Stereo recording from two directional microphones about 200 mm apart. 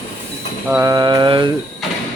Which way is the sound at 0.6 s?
15° right (ahead or behind).